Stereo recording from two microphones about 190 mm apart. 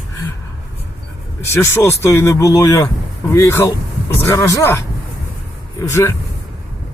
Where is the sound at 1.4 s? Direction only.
15° left (ahead or behind).